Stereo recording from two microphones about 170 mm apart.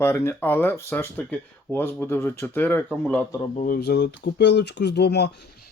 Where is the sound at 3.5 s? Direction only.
55° left (ahead or behind); by 5.2 s 80° left.